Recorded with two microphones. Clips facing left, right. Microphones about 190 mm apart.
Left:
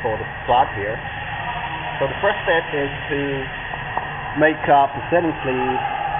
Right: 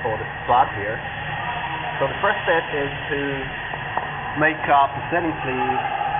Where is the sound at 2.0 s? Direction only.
Centre (ahead or behind).